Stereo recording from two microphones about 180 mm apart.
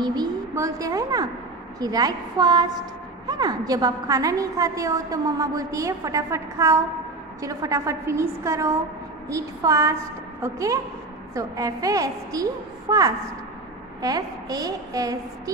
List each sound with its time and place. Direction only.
0.0 s a woman's voice: 20° right (ahead or behind)